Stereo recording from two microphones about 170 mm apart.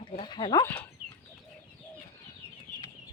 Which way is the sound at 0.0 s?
30° left (ahead or behind).